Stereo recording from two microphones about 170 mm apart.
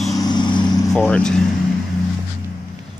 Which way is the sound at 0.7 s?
5° left (ahead or behind).